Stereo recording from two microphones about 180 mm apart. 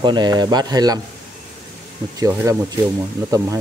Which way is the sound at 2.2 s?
20° right (ahead or behind).